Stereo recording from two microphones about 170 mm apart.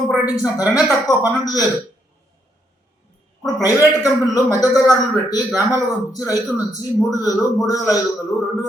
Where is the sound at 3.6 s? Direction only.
20° left (ahead or behind).